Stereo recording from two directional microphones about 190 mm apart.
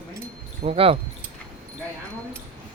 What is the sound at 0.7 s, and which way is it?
Speech, 30° right (ahead or behind).